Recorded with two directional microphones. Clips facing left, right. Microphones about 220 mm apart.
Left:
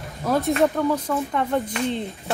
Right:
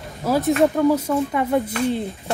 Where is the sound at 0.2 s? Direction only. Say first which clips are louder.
Right 2 dB; 5° right (ahead or behind).